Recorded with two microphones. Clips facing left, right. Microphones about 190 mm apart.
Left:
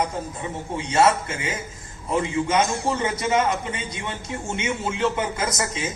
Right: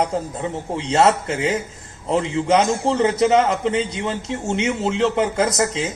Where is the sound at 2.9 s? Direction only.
70° right (ahead or behind).